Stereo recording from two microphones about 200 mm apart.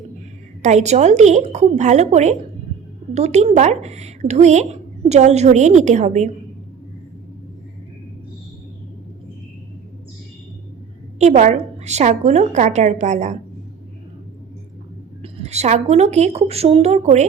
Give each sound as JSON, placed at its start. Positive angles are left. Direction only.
{"t": 0.6, "sound": "speech", "side_deg": -35}
{"t": 11.2, "sound": "speech", "side_deg": -35}
{"t": 15.2, "sound": "speech", "side_deg": -35}